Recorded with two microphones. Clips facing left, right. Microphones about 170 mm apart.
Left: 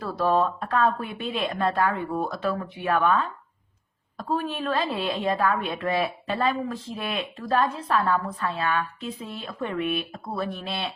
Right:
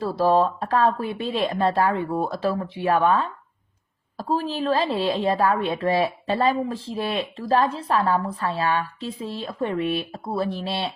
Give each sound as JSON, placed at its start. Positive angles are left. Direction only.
{"t": 0.0, "sound": "a woman's voice", "side_deg": -30}